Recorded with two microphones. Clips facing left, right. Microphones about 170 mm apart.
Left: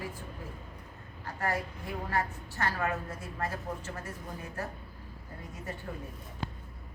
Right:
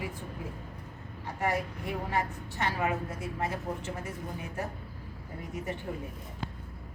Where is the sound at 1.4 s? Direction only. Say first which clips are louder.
Right 3 dB; 15° right (ahead or behind).